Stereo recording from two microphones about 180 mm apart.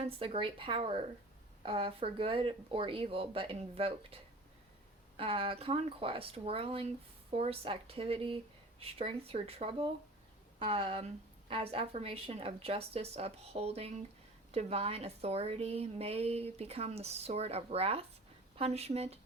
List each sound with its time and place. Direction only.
0.2 s a woman's voice: 30° right (ahead or behind)